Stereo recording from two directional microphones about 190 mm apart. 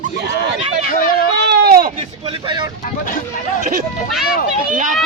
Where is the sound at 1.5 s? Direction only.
55° right (ahead or behind).